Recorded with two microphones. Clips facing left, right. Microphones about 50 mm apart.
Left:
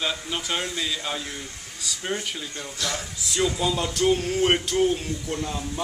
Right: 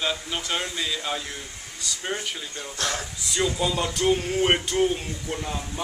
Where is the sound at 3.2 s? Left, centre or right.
Centre.